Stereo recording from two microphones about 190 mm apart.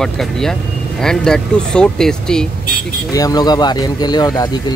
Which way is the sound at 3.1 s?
20° left (ahead or behind).